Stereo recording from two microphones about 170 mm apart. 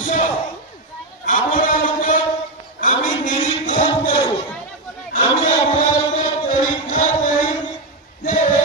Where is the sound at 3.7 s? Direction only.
30° left (ahead or behind).